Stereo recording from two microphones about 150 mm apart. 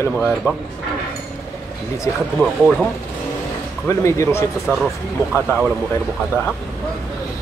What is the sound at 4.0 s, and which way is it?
Speech, 20° left (ahead or behind).